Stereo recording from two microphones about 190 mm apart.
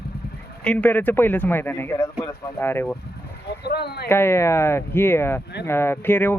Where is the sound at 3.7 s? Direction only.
60° left (ahead or behind).